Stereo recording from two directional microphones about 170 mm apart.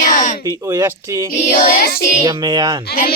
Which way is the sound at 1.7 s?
65° left (ahead or behind).